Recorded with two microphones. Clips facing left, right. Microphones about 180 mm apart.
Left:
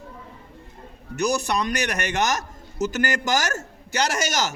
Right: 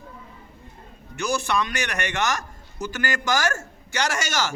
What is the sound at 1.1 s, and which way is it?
A man's voice, 40° left (ahead or behind).